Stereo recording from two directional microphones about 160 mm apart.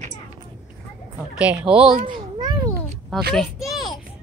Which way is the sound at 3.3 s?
Centre (ahead or behind).